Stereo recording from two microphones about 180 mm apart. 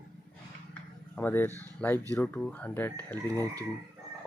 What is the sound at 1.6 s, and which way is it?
Speech, 10° left (ahead or behind).